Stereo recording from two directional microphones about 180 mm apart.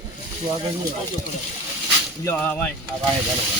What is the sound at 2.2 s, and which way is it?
Speech, 15° left (ahead or behind).